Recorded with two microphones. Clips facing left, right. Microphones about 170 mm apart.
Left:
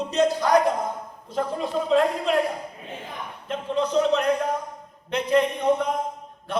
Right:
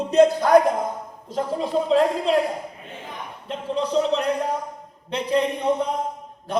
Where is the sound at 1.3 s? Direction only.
35° right (ahead or behind).